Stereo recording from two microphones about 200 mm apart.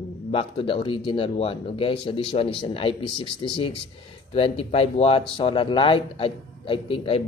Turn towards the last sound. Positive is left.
turn(degrees=25)  # may be behind; listen again after turning